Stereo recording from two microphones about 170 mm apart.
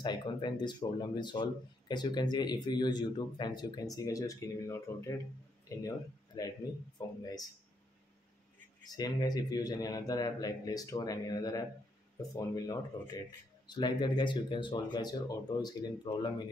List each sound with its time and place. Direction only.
0.0 s speech: 25° left (ahead or behind)
8.8 s speech: 25° left (ahead or behind)